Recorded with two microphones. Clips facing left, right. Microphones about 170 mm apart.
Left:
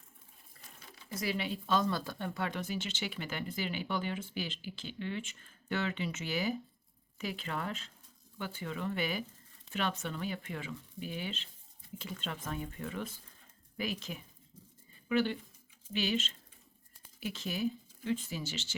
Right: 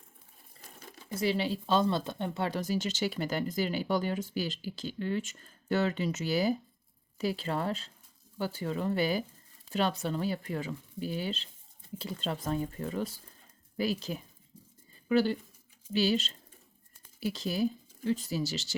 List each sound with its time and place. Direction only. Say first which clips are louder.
1.1 s speech: right 6 dB; 30° right (ahead or behind)